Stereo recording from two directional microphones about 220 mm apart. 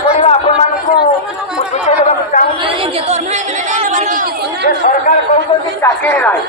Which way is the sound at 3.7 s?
35° right (ahead or behind).